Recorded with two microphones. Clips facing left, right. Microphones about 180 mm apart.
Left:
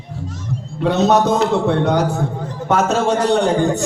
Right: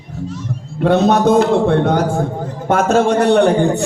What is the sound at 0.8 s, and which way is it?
A man's voice, 55° right (ahead or behind).